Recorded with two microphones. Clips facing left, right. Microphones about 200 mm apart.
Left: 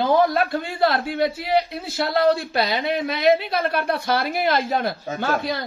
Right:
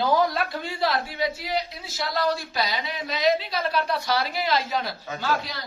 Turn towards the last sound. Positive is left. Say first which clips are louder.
# left 5 dB
turn(degrees=55)  # may be behind; listen again after turning